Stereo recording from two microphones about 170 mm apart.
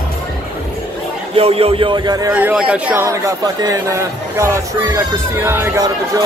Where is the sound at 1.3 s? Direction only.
35° right (ahead or behind).